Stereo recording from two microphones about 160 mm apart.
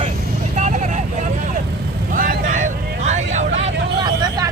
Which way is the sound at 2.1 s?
60° right (ahead or behind).